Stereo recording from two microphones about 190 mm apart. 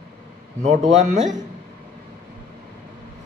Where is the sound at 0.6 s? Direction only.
40° right (ahead or behind).